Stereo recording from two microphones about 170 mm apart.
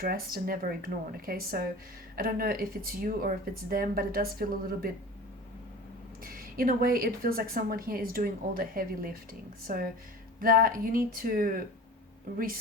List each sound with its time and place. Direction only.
0.0 s a woman's voice: 60° right (ahead or behind)
6.2 s a woman's voice: 55° right (ahead or behind)